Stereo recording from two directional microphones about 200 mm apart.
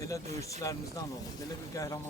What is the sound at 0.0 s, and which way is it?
A man's voice, 15° left (ahead or behind).